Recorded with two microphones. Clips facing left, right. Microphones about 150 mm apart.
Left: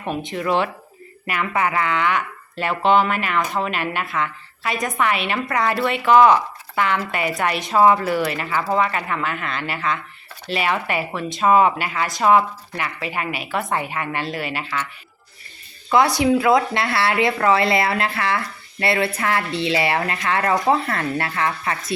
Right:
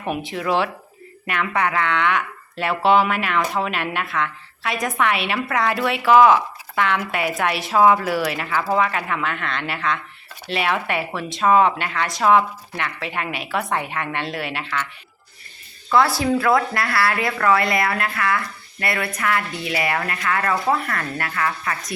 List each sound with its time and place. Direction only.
0.0 s speech: 5° right (ahead or behind)
15.9 s speech: 20° left (ahead or behind)